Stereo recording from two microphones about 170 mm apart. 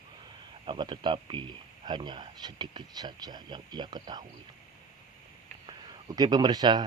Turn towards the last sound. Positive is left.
turn(degrees=-25)  # may be behind; listen again after turning